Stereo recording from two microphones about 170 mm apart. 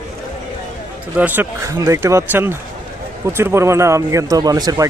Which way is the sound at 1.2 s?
10° right (ahead or behind).